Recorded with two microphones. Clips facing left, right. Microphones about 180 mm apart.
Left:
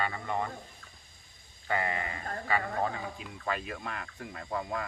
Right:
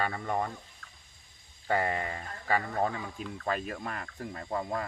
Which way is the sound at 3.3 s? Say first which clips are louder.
Right 2 dB; 40° right (ahead or behind).